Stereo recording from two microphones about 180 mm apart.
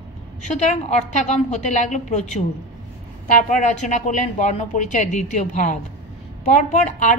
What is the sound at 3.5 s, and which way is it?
A woman's voice, 40° left (ahead or behind).